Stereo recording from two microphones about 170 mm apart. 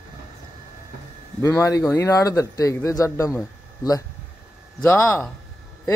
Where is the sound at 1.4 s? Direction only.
20° left (ahead or behind).